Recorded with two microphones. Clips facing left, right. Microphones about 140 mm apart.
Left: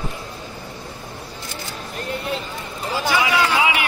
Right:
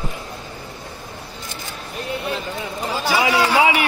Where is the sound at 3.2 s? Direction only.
40° right (ahead or behind).